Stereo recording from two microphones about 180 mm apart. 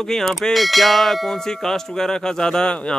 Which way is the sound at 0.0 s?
Centre (ahead or behind).